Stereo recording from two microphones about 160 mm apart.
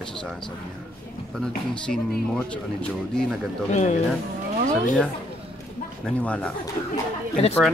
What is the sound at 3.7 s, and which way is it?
Speech, 45° left (ahead or behind).